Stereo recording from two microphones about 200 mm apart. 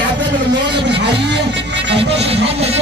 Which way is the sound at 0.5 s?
60° right (ahead or behind).